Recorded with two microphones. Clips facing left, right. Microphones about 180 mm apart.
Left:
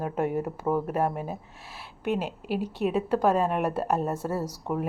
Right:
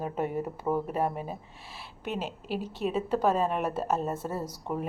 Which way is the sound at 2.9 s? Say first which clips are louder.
Left 2 dB; 5° left (ahead or behind).